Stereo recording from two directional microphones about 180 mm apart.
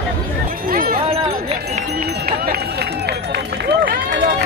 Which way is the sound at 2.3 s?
65° right (ahead or behind).